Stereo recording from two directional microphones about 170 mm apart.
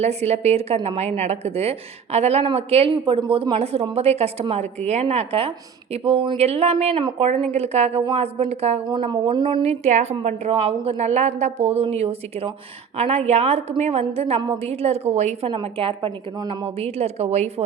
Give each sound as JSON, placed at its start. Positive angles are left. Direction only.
{"t": 0.0, "sound": "a woman's voice", "side_deg": -40}
{"t": 9.8, "sound": "a woman's voice", "side_deg": -40}